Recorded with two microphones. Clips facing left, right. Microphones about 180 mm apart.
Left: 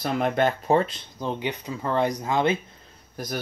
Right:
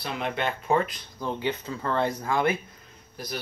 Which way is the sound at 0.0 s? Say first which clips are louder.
Left 7 dB; 45° left (ahead or behind).